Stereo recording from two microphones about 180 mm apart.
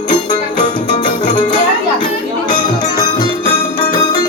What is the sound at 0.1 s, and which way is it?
Music, 45° left (ahead or behind).